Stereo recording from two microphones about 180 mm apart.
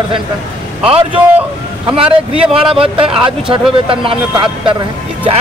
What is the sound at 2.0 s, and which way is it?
Speech, 5° right (ahead or behind).